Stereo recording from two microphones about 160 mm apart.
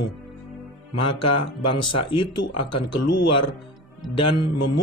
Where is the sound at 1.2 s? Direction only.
35° left (ahead or behind).